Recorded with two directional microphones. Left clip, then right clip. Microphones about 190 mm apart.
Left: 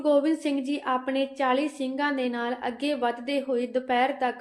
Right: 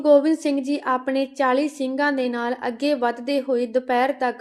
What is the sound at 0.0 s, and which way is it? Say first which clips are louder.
A woman's voice: right 7 dB; 30° right (ahead or behind).